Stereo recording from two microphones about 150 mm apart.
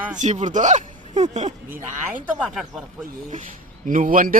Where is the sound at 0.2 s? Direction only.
55° right (ahead or behind).